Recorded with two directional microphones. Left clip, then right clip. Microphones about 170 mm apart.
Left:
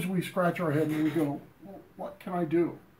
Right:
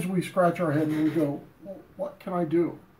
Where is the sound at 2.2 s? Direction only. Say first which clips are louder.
Right 2 dB; 10° right (ahead or behind).